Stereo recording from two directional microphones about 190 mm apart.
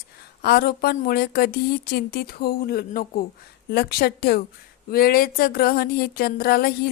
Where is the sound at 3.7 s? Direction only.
55° left (ahead or behind).